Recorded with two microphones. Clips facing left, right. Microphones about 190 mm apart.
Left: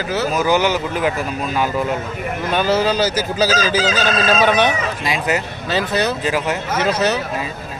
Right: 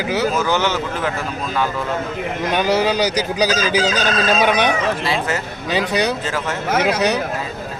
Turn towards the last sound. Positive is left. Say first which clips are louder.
# right 1 dB
turn(degrees=-15)  # may be behind; listen again after turning